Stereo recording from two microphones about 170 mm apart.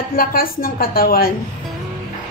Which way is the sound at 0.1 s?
60° left (ahead or behind).